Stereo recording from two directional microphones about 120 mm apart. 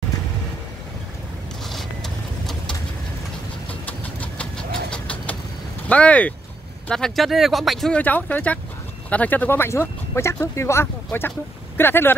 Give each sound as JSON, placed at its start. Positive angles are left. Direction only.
{"t": 1.7, "sound": "vehicle", "side_deg": 0}
{"t": 3.8, "sound": "engine", "side_deg": 10}
{"t": 4.9, "sound": "vehicle", "side_deg": 10}
{"t": 5.9, "sound": "speech", "side_deg": 10}
{"t": 8.0, "sound": "speech", "side_deg": 15}